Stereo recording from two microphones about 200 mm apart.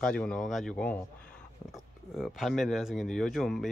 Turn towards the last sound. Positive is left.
turn(degrees=0)  # may be behind; listen again after turning